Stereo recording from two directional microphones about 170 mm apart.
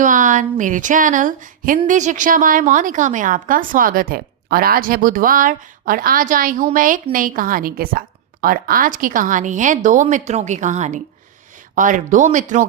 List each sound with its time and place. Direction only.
0.0 s a woman's voice: 50° right (ahead or behind)